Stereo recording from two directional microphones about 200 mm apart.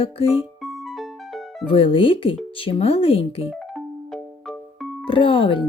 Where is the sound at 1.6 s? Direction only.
25° left (ahead or behind).